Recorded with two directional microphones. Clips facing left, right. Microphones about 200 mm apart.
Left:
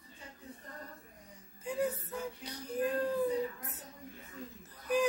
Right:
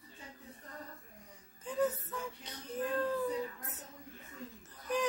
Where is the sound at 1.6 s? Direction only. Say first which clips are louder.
Right 1 dB; 10° left (ahead or behind).